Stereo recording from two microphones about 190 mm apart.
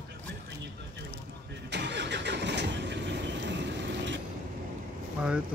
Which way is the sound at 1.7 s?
65° right (ahead or behind).